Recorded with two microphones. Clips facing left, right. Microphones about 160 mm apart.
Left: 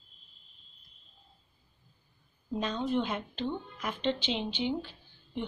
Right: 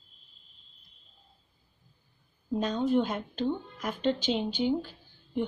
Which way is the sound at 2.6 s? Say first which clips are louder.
Right 4 dB; 45° right (ahead or behind).